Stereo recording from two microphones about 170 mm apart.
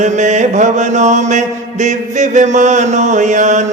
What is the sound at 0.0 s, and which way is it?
Mantra, 45° right (ahead or behind).